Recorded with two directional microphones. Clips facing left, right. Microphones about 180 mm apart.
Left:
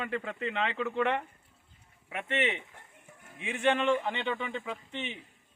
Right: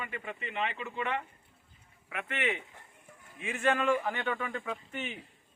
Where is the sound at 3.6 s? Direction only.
25° left (ahead or behind).